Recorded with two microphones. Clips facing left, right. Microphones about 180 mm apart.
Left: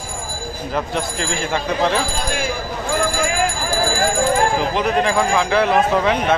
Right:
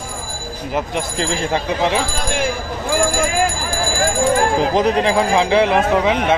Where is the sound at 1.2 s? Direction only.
30° right (ahead or behind).